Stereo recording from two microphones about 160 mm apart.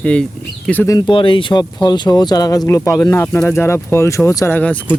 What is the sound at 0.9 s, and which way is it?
Speech, 30° left (ahead or behind).